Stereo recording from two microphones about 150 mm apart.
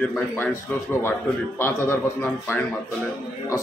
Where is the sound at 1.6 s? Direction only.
15° left (ahead or behind).